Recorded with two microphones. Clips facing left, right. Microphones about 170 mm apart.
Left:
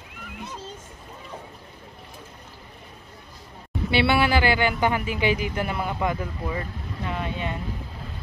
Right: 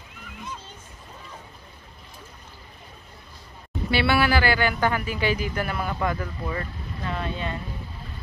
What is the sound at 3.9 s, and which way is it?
A man's voice, 20° left (ahead or behind).